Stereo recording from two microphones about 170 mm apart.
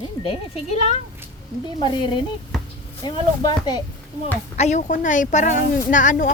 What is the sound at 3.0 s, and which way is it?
Speech, 25° left (ahead or behind).